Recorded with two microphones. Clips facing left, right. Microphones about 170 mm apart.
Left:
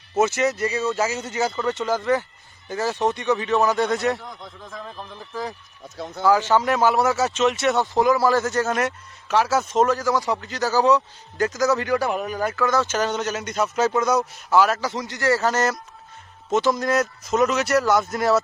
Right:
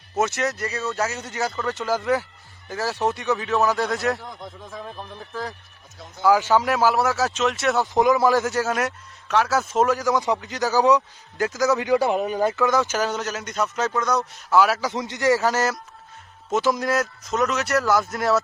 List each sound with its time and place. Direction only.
0.2 s speech: centre (ahead or behind)
5.3 s speech: 15° left (ahead or behind)
6.2 s speech: 10° right (ahead or behind)
7.9 s speech: 20° right (ahead or behind)
11.3 s speech: 5° right (ahead or behind)
11.7 s speech: 20° right (ahead or behind)
13.0 s speech: centre (ahead or behind)
14.8 s speech: 15° right (ahead or behind); by 18.4 s centre (ahead or behind)